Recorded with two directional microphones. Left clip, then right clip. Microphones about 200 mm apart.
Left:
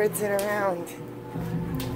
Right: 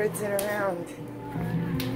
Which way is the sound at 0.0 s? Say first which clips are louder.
Left 3 dB; 25° left (ahead or behind).